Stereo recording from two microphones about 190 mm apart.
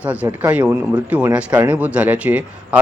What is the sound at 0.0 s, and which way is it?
Speech, 10° right (ahead or behind).